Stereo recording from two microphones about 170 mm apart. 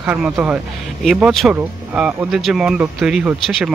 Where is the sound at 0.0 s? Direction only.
10° right (ahead or behind).